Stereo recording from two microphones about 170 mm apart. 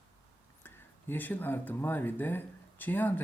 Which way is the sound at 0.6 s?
10° left (ahead or behind).